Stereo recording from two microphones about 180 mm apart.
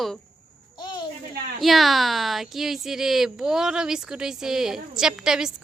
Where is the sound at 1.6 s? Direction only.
Centre (ahead or behind).